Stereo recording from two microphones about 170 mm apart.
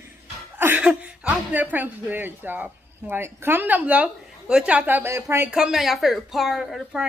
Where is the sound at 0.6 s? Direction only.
10° right (ahead or behind).